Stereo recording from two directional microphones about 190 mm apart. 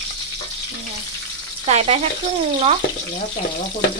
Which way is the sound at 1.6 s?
35° right (ahead or behind).